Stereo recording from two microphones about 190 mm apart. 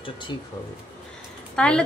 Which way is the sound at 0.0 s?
25° left (ahead or behind).